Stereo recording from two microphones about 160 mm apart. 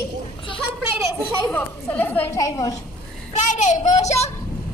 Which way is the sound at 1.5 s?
10° left (ahead or behind).